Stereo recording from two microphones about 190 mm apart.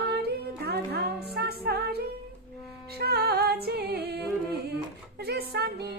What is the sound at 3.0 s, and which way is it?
Music, 55° right (ahead or behind).